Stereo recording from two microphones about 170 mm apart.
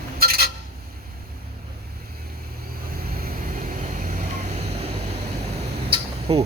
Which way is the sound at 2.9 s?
60° right (ahead or behind).